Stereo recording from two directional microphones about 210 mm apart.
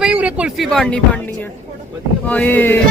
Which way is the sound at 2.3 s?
5° left (ahead or behind).